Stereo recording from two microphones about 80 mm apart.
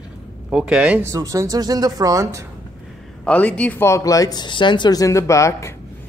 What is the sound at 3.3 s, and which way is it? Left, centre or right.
Speech, centre.